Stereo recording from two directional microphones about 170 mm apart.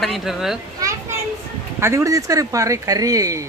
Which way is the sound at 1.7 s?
15° right (ahead or behind).